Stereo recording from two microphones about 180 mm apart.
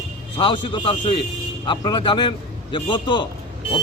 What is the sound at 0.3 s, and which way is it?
A man's voice, 25° left (ahead or behind).